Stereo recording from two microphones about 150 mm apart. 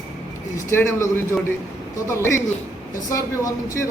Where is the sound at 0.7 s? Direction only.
15° left (ahead or behind).